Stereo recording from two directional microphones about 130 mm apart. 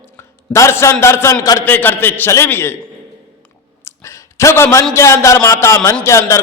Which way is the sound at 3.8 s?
20° left (ahead or behind).